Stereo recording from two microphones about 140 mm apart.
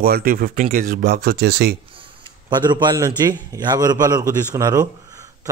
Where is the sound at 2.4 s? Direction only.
30° right (ahead or behind).